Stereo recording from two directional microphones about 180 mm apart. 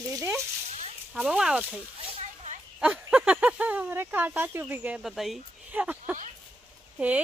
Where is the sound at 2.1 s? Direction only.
40° right (ahead or behind).